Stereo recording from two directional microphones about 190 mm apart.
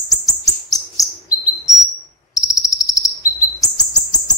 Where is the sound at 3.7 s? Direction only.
20° left (ahead or behind).